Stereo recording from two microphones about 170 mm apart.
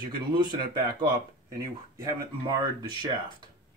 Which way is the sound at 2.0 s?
25° right (ahead or behind).